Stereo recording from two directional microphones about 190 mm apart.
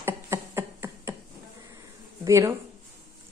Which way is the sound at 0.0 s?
15° right (ahead or behind).